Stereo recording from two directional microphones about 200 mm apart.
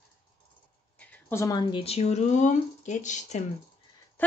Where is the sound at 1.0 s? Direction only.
10° left (ahead or behind); by 3.4 s 40° left (ahead or behind).